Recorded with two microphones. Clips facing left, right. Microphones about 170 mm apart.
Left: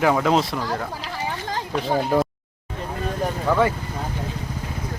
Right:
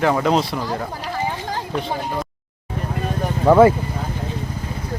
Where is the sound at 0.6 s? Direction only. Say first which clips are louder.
Right 1 dB; 10° right (ahead or behind).